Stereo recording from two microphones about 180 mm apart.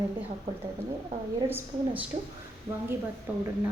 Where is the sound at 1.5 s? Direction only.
10° right (ahead or behind).